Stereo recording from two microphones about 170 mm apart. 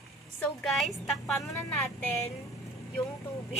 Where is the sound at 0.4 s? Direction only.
Centre (ahead or behind).